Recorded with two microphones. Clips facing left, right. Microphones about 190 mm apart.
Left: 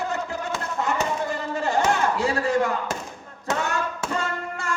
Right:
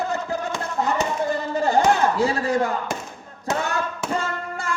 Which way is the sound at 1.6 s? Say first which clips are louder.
Right 4 dB; 35° right (ahead or behind).